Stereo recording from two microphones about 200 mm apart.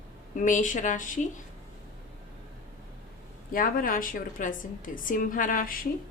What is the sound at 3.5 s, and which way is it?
A woman's voice, 45° left (ahead or behind).